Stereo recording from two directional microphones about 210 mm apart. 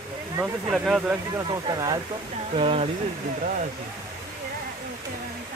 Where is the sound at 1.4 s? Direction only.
20° right (ahead or behind).